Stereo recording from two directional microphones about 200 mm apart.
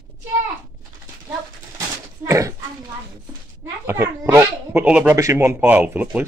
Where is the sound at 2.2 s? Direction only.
15° right (ahead or behind).